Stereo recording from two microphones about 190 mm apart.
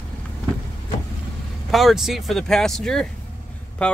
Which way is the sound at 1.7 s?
Centre (ahead or behind).